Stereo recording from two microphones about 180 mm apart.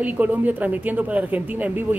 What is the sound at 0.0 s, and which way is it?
A man's voice, 10° right (ahead or behind).